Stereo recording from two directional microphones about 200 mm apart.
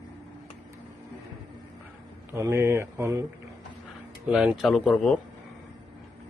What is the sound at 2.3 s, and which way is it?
Speech, 15° right (ahead or behind).